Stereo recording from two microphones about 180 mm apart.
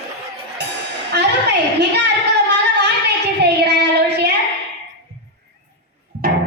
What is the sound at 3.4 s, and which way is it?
Child singing, 70° right (ahead or behind).